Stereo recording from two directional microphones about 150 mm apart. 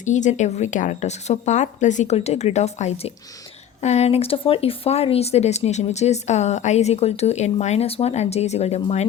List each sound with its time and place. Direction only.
0.0 s speech: 55° left (ahead or behind)